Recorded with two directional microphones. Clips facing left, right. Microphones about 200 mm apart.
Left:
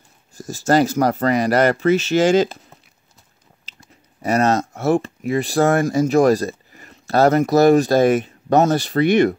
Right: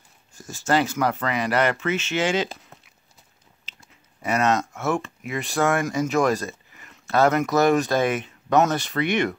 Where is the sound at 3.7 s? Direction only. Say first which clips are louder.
Left 4 dB; 40° left (ahead or behind).